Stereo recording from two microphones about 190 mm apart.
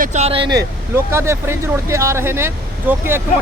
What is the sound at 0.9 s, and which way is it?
Speech, 15° right (ahead or behind).